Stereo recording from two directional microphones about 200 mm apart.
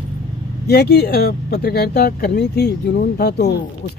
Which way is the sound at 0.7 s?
55° left (ahead or behind).